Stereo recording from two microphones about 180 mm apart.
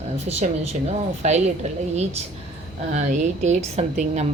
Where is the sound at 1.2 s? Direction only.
40° right (ahead or behind).